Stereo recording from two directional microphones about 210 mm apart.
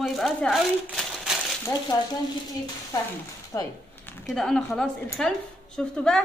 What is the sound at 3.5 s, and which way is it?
Speech, 15° left (ahead or behind).